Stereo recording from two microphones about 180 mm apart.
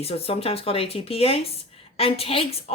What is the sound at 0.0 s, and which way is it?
Speech, 35° left (ahead or behind).